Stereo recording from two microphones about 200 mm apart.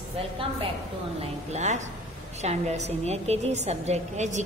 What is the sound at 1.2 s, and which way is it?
A woman's voice, 35° right (ahead or behind).